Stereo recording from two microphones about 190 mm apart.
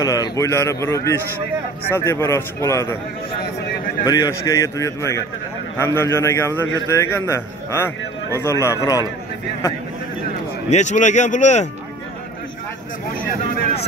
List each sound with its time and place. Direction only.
0.0 s a man's voice: 20° left (ahead or behind)
4.0 s a man's voice: 20° left (ahead or behind)
10.7 s speech: 40° left (ahead or behind)